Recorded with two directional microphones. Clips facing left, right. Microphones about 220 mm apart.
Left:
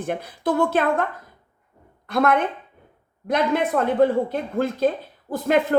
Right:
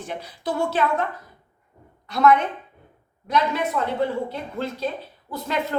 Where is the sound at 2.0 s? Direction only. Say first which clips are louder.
Right 1 dB; 55° left (ahead or behind).